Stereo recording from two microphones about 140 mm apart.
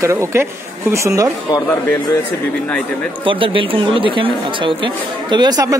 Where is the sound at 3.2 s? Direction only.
35° right (ahead or behind).